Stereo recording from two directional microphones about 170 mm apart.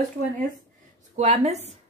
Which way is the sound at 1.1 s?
40° right (ahead or behind).